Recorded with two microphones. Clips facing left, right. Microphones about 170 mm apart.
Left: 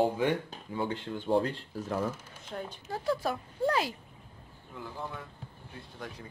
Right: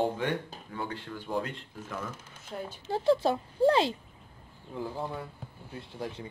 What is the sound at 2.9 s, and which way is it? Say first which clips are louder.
Speech: right 6 dB; 25° right (ahead or behind).